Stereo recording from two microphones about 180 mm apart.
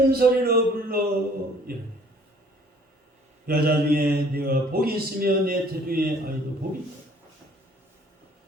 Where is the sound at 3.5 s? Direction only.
55° right (ahead or behind).